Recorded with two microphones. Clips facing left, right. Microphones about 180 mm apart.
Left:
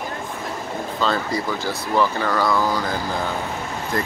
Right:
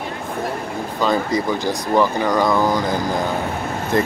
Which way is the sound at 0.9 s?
15° right (ahead or behind).